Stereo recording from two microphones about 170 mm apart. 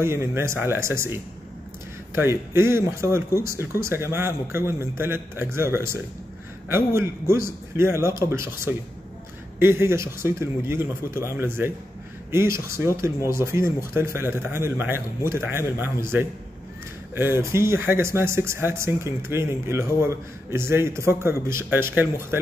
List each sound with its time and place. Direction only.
0.0 s speech: 15° right (ahead or behind)
17.1 s speech: 15° right (ahead or behind)